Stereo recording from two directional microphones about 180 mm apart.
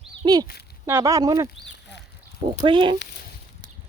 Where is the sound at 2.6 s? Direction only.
25° right (ahead or behind).